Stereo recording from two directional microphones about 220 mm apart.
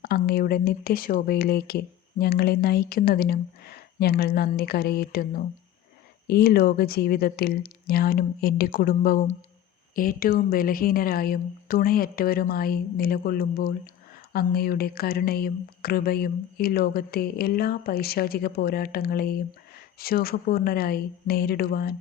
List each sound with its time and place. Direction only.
0.0 s speech: 45° left (ahead or behind)